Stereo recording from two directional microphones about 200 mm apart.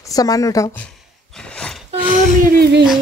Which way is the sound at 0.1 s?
20° left (ahead or behind).